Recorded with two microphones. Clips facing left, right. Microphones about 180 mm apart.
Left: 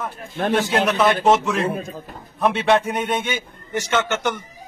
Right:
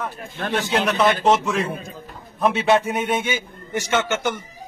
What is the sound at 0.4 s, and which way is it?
Speech, 45° left (ahead or behind).